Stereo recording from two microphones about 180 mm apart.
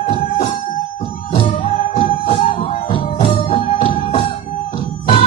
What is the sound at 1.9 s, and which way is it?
Music, 30° left (ahead or behind).